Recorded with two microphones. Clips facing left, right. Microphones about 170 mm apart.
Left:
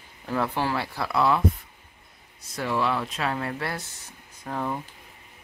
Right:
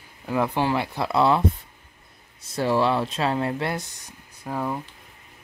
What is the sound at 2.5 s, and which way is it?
Speech, 30° right (ahead or behind).